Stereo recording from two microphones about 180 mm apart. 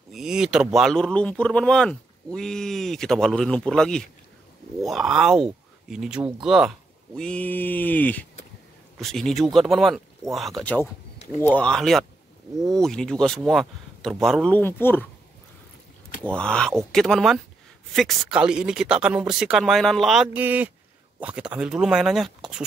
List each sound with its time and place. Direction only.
0.1 s speech: 5° right (ahead or behind)
7.2 s mantra: 5° left (ahead or behind)
8.9 s speech: 5° left (ahead or behind)
16.3 s speech: 5° left (ahead or behind)